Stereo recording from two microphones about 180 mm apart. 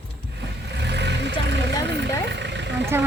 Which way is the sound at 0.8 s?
70° right (ahead or behind).